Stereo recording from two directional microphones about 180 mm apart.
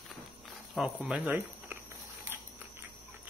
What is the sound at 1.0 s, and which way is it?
Speech, 5° right (ahead or behind).